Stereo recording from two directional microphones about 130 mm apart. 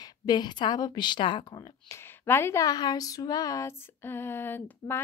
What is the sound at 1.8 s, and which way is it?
Speech, 20° left (ahead or behind).